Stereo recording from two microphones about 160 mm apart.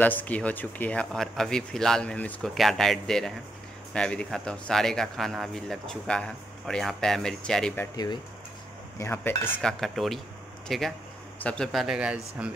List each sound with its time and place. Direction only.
0.0 s speech: 10° left (ahead or behind)
7.9 s speech: 25° left (ahead or behind)
9.6 s speech: 5° left (ahead or behind)